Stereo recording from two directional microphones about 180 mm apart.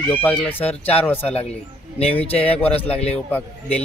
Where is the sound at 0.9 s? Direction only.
10° left (ahead or behind).